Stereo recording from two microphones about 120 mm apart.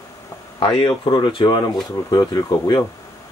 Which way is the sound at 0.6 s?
50° left (ahead or behind).